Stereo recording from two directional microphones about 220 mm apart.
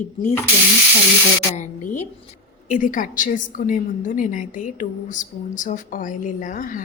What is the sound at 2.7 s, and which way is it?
A woman's voice, 35° left (ahead or behind).